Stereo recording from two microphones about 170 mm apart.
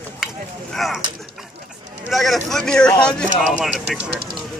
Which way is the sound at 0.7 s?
Centre (ahead or behind).